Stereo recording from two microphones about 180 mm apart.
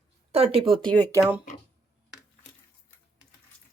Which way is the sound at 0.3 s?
35° right (ahead or behind).